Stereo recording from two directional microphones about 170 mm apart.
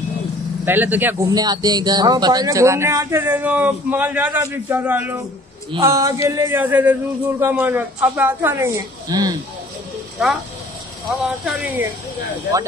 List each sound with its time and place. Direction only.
0.7 s a man's voice: 10° right (ahead or behind)
1.3 s a man's voice: 25° right (ahead or behind)
5.7 s a man's voice: 20° right (ahead or behind)
11.1 s speech: 5° right (ahead or behind)